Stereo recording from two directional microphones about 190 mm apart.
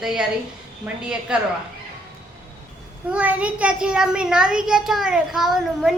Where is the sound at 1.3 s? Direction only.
5° right (ahead or behind).